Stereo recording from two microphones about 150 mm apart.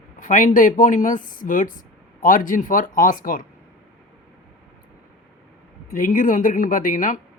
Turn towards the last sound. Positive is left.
turn(degrees=60)  # may be behind; listen again after turning